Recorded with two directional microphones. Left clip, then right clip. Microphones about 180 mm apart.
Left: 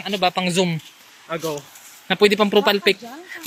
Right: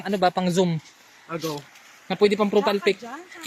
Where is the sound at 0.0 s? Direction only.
40° right (ahead or behind).